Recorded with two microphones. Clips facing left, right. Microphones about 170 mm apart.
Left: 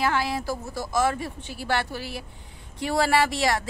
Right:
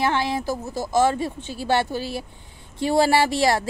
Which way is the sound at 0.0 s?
25° right (ahead or behind).